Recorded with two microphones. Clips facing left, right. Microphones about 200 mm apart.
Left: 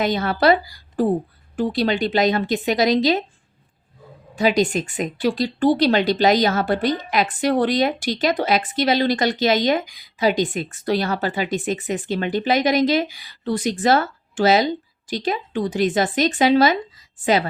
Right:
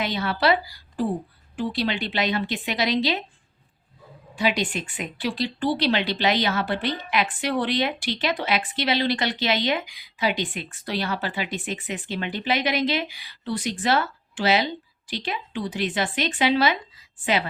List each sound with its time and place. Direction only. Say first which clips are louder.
0.0 s speech: left 5 dB; 45° left (ahead or behind)
4.4 s a woman's voice: left 6 dB; 40° left (ahead or behind)